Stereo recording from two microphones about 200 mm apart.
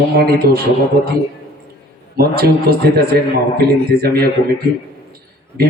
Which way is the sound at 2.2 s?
50° right (ahead or behind).